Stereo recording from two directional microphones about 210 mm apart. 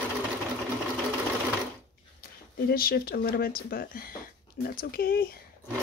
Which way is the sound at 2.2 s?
45° left (ahead or behind).